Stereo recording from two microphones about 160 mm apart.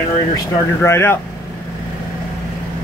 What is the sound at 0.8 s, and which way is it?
Speech, 15° left (ahead or behind).